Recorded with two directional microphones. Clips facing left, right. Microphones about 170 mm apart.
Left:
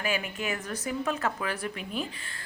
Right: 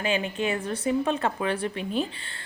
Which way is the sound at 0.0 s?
25° right (ahead or behind).